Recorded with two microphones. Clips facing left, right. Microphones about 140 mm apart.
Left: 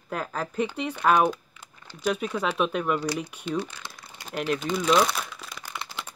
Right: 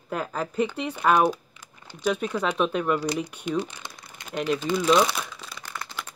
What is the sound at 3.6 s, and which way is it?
Speech, 20° right (ahead or behind).